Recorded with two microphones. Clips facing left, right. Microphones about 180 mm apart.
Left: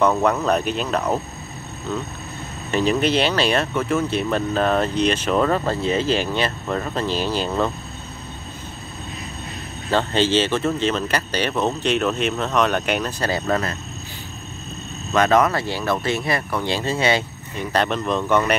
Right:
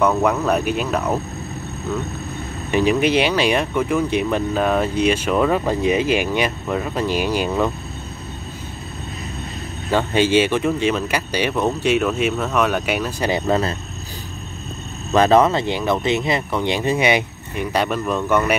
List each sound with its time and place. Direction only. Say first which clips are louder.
0.0 s speech: right 1 dB; 5° right (ahead or behind)
2.7 s speech: right 2 dB; 15° right (ahead or behind)
9.8 s speech: right 2 dB; 10° right (ahead or behind)
13.3 s speech: right 4 dB; 25° right (ahead or behind)
15.1 s speech: right 3 dB; 30° right (ahead or behind); by 18.4 s 10° right (ahead or behind)